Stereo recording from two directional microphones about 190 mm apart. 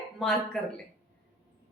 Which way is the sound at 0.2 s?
Centre (ahead or behind).